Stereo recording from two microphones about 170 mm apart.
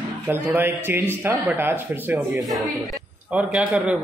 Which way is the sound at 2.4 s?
Centre (ahead or behind).